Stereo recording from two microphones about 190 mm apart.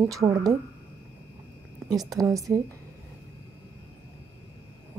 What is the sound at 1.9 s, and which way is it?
Speech, 20° right (ahead or behind).